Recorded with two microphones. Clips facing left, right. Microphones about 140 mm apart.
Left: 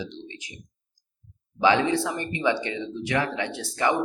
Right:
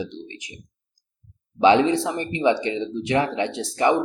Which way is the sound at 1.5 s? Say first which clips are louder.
Right 5 dB; 20° right (ahead or behind).